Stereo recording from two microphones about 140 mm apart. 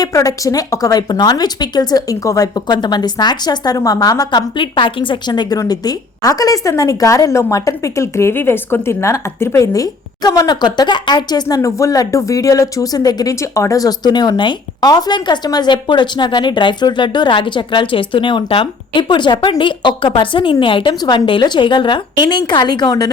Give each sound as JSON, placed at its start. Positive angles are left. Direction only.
{"t": 0.0, "sound": "speech", "side_deg": 25}